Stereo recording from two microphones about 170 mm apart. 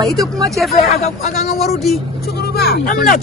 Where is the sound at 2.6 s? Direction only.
60° left (ahead or behind).